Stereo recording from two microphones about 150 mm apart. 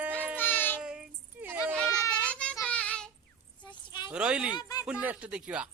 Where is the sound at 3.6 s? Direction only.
30° left (ahead or behind).